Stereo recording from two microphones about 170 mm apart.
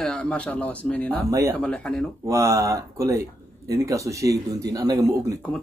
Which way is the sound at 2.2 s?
15° right (ahead or behind).